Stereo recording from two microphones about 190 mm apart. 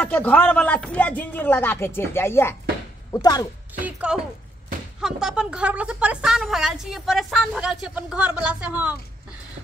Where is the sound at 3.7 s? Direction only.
5° right (ahead or behind).